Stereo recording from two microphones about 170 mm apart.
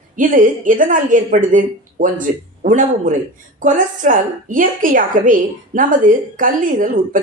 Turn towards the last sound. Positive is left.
turn(degrees=-50)  # may be behind; listen again after turning